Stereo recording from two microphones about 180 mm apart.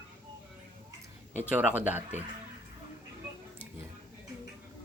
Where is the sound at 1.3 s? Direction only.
10° right (ahead or behind).